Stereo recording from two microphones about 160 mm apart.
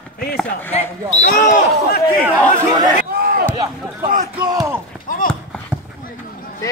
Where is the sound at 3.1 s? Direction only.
70° right (ahead or behind).